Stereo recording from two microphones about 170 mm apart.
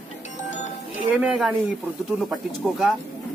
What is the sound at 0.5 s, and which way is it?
Music, 45° left (ahead or behind).